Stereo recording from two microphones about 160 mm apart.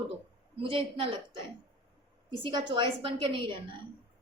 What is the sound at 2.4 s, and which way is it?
A woman's voice, 30° right (ahead or behind).